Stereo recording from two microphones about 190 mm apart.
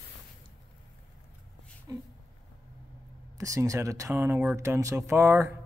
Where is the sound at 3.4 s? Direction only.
15° right (ahead or behind).